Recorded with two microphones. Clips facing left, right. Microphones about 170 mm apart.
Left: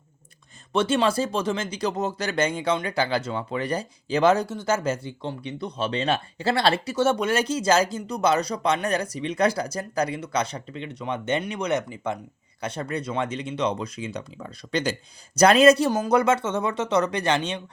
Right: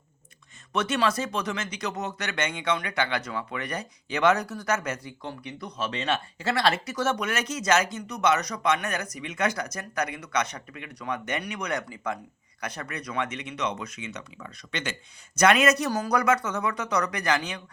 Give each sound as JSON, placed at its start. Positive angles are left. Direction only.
{"t": 0.7, "sound": "speech", "side_deg": 30}